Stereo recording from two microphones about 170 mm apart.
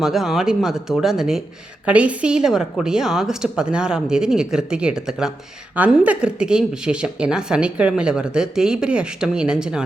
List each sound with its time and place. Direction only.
0.0 s speech: centre (ahead or behind)